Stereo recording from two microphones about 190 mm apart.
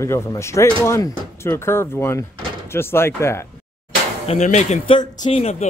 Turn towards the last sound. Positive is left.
turn(degrees=35)  # may be behind; listen again after turning